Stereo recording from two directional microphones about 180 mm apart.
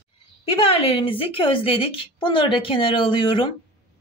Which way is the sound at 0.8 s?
30° left (ahead or behind).